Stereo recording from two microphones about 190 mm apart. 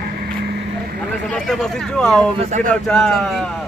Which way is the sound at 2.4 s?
40° right (ahead or behind).